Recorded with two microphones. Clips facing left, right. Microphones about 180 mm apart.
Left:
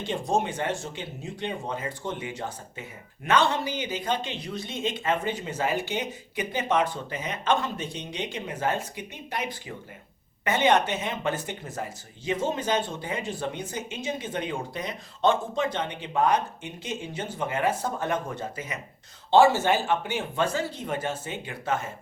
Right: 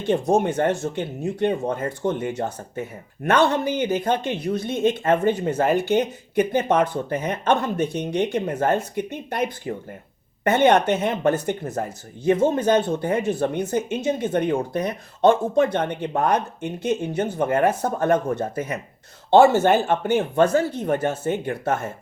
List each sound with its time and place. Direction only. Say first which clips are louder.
0.0 s speech: right 7 dB; 60° right (ahead or behind)